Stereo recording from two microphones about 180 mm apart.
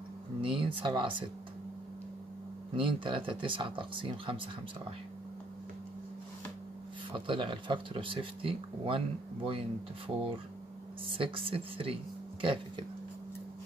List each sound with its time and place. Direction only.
0.4 s speech: 30° right (ahead or behind)
2.7 s speech: 30° right (ahead or behind)
7.1 s speech: 30° right (ahead or behind)
11.1 s speech: 30° right (ahead or behind)